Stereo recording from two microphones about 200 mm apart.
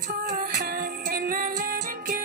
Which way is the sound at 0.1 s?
40° right (ahead or behind).